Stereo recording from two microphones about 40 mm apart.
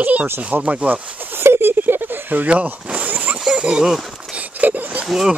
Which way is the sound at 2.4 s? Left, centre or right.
Right.